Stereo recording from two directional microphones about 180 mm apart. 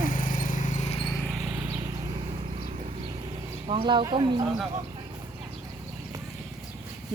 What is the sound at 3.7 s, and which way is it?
Speech, 30° right (ahead or behind).